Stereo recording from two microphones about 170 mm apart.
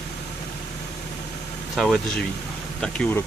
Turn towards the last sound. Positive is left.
turn(degrees=10)  # may be behind; listen again after turning